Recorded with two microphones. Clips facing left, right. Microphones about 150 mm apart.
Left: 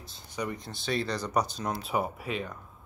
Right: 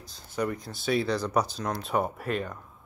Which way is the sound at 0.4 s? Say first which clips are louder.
Right 4 dB; 5° right (ahead or behind).